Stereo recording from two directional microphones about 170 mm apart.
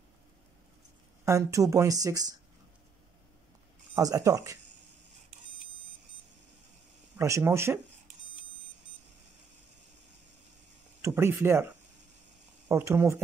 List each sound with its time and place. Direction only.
1.2 s a woman's voice: 15° right (ahead or behind)
3.9 s a woman's voice: 20° right (ahead or behind)
7.2 s speech: 15° right (ahead or behind)
11.0 s speech: 15° right (ahead or behind)